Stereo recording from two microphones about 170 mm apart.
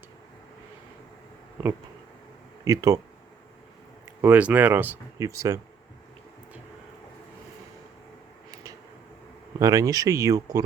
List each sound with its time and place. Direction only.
2.6 s speech: 20° right (ahead or behind)
4.2 s speech: 10° right (ahead or behind)
9.6 s speech: 20° right (ahead or behind)